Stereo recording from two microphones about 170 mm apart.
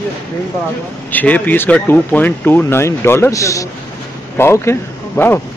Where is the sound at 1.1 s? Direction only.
10° left (ahead or behind).